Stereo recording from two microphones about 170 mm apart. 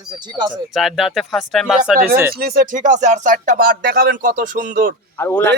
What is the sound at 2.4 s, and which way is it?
Speech, 60° right (ahead or behind).